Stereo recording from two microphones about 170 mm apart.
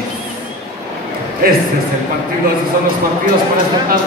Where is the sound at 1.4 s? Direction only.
60° right (ahead or behind).